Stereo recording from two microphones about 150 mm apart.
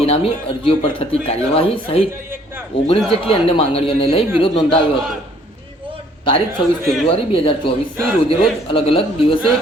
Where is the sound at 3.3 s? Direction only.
40° left (ahead or behind).